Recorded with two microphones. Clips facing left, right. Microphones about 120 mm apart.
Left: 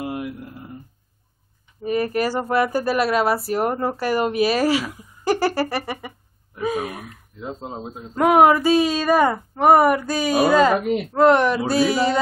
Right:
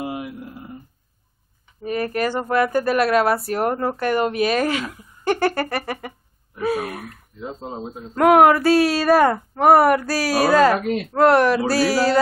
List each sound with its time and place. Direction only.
0.0 s a sound: 5° right (ahead or behind)
2.1 s speech: 10° left (ahead or behind)
5.9 s a sound: 10° left (ahead or behind)
6.8 s speech: centre (ahead or behind)
10.7 s speech: 15° left (ahead or behind)
11.1 s speech: 5° right (ahead or behind)